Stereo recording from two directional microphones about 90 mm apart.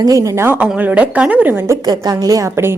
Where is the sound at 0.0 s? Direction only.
40° right (ahead or behind).